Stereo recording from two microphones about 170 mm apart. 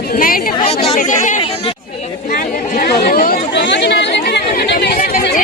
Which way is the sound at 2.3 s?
55° left (ahead or behind).